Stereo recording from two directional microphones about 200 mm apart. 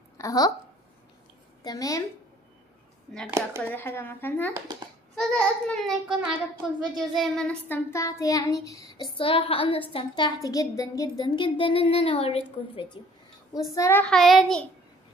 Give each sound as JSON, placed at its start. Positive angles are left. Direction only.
{"t": 0.2, "sound": "a woman's voice", "side_deg": 20}
{"t": 1.6, "sound": "a woman's voice", "side_deg": 20}
{"t": 3.3, "sound": "speech", "side_deg": -15}
{"t": 3.6, "sound": "speech", "side_deg": 10}
{"t": 5.1, "sound": "child singing", "side_deg": 5}
{"t": 13.7, "sound": "child singing", "side_deg": 10}